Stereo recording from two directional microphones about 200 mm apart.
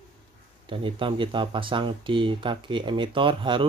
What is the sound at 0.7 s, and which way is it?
Speech, 25° right (ahead or behind).